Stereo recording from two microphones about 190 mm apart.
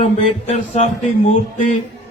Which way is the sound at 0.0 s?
35° left (ahead or behind).